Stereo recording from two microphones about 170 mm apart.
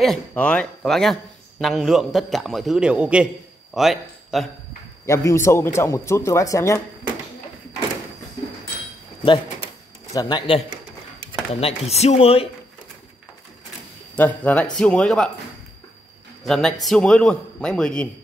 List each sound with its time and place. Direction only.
0.0 s a man's voice: 5° left (ahead or behind)
5.0 s a man's voice: 15° left (ahead or behind)
10.1 s speech: 25° left (ahead or behind)
11.6 s speech: 40° left (ahead or behind)
14.1 s a man's voice: 10° left (ahead or behind)
16.4 s a man's voice: centre (ahead or behind)